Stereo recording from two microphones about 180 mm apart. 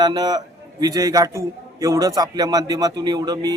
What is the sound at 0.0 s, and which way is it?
A man's voice, 25° right (ahead or behind).